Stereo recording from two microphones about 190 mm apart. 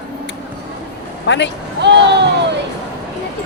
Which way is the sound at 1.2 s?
70° left (ahead or behind).